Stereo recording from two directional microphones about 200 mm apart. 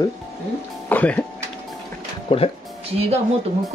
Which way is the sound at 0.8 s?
5° left (ahead or behind).